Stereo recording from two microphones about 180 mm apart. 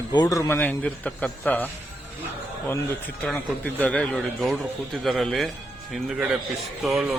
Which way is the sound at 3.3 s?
10° left (ahead or behind).